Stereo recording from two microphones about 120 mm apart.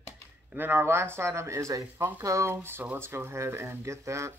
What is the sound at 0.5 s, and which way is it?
Speech, 15° right (ahead or behind).